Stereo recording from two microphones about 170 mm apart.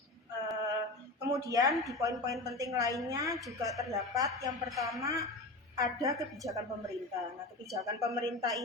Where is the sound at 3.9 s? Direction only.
20° right (ahead or behind).